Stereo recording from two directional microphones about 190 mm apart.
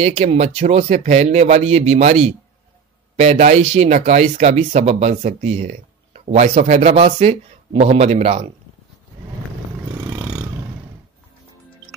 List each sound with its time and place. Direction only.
0.0 s speech: 35° right (ahead or behind)